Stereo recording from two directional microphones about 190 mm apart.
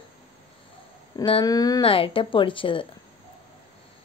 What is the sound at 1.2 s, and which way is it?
Speech, 20° left (ahead or behind).